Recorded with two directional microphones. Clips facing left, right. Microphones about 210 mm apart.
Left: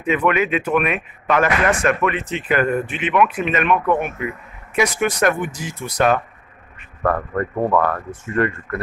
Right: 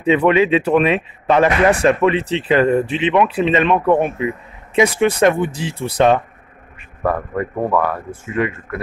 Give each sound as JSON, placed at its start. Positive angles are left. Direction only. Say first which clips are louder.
{"t": 0.0, "sound": "speech", "louder": "right 5 dB", "side_deg": -30}
{"t": 7.0, "sound": "speech", "louder": "right 1 dB", "side_deg": -10}